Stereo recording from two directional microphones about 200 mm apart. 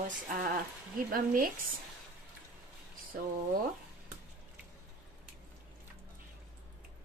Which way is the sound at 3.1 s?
45° right (ahead or behind).